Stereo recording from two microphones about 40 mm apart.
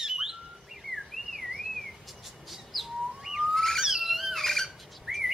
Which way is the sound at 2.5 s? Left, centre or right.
Centre.